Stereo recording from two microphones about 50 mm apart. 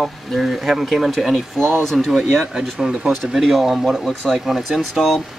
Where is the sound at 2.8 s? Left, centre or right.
Centre.